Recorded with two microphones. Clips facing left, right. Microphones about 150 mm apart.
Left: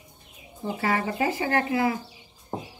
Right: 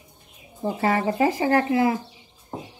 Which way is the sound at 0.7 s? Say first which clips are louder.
Right 4 dB; 40° right (ahead or behind).